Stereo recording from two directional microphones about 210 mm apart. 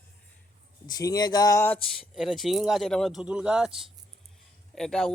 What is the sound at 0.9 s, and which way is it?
Speech, 20° left (ahead or behind).